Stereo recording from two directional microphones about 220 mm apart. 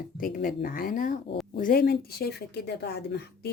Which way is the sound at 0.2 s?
40° left (ahead or behind).